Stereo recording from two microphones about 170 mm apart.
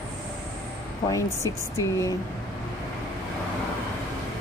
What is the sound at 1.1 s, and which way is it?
Speech, 20° left (ahead or behind).